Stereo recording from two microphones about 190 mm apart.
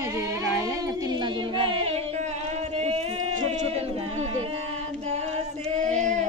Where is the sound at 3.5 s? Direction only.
35° right (ahead or behind).